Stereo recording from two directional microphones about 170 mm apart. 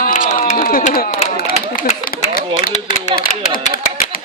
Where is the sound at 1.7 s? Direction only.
55° left (ahead or behind).